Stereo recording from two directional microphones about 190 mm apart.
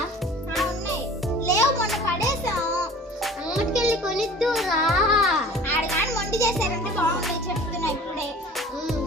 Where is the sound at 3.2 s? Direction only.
Centre (ahead or behind).